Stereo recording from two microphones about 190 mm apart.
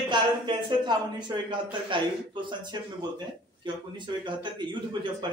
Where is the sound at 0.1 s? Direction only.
25° right (ahead or behind).